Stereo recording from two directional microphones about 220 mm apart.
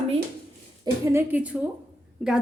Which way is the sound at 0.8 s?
10° right (ahead or behind).